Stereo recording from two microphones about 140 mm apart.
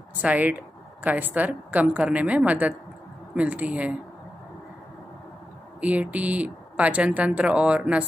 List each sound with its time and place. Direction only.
0.2 s speech: 10° right (ahead or behind)
5.8 s speech: 10° right (ahead or behind)